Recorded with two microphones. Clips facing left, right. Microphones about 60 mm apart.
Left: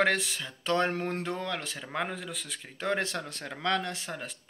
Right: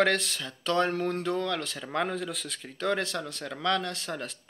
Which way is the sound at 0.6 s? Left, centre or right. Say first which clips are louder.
Right 2 dB; left.